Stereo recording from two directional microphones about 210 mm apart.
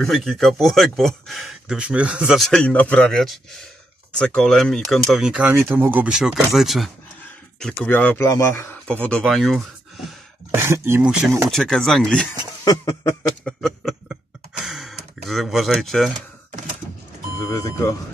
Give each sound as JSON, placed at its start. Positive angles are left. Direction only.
{"t": 0.0, "sound": "speech", "side_deg": 0}
{"t": 10.5, "sound": "speech", "side_deg": -10}
{"t": 12.6, "sound": "speech", "side_deg": 15}
{"t": 13.4, "sound": "a sound", "side_deg": 0}
{"t": 14.6, "sound": "speech", "side_deg": 0}
{"t": 17.4, "sound": "speech", "side_deg": 15}